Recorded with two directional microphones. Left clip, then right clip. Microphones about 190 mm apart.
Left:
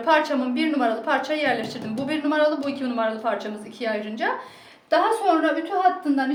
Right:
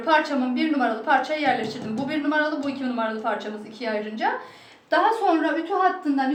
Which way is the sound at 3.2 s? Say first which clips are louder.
Left 1 dB; 45° left (ahead or behind).